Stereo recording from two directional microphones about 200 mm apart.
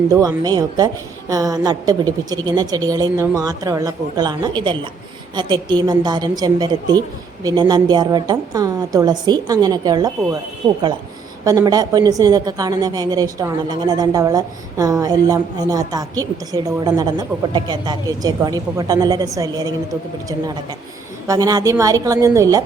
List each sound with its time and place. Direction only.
0.1 s a woman's voice: 15° right (ahead or behind)
11.4 s a woman's voice: 20° right (ahead or behind)
21.2 s a woman's voice: 20° right (ahead or behind)